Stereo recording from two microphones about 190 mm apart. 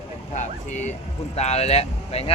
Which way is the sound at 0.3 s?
40° left (ahead or behind).